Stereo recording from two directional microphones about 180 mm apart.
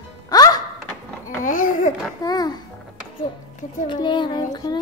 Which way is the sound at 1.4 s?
45° left (ahead or behind).